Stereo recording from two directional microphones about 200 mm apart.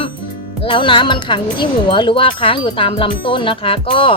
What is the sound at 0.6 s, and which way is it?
Speech, 25° left (ahead or behind).